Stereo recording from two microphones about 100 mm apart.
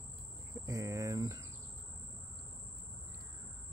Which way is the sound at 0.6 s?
35° right (ahead or behind).